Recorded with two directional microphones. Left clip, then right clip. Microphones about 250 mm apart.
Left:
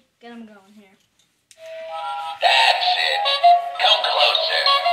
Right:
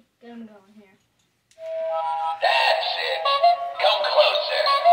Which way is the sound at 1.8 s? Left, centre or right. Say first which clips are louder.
Right 3 dB; centre.